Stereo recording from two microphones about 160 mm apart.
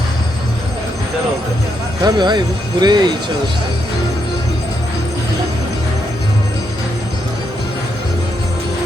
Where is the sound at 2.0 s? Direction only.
25° right (ahead or behind).